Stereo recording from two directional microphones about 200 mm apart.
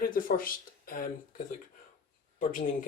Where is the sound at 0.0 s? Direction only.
45° left (ahead or behind).